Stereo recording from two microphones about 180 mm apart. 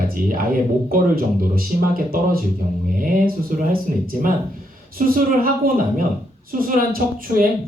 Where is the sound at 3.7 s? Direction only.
55° right (ahead or behind).